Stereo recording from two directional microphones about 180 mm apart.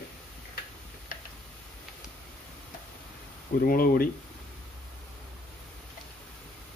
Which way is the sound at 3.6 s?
55° left (ahead or behind).